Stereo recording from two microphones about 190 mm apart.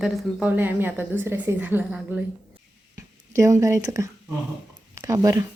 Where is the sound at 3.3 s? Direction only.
15° right (ahead or behind).